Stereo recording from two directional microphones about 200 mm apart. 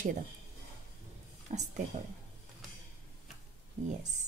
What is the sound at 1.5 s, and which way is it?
Speech, 35° right (ahead or behind).